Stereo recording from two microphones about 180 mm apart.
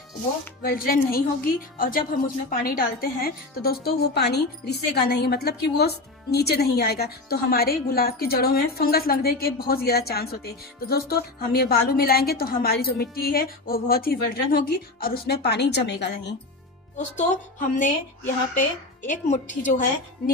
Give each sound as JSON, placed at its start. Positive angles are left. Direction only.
{"t": 0.6, "sound": "a woman's voice", "side_deg": 55}
{"t": 17.2, "sound": "a woman's voice", "side_deg": 45}